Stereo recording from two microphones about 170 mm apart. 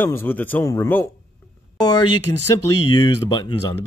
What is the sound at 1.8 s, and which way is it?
Speech, 25° left (ahead or behind).